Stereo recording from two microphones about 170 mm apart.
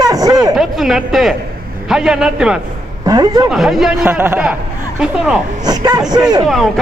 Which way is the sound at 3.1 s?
25° right (ahead or behind).